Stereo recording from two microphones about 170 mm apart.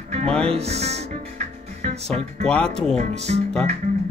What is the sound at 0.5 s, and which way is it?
Speech, 40° right (ahead or behind).